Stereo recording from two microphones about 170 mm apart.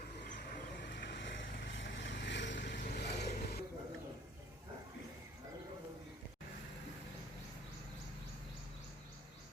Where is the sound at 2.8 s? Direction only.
75° left (ahead or behind).